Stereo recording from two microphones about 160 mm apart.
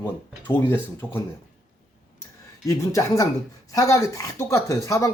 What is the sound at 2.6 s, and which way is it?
Speech, 20° left (ahead or behind).